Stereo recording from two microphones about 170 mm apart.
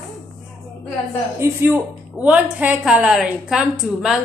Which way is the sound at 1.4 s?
15° right (ahead or behind).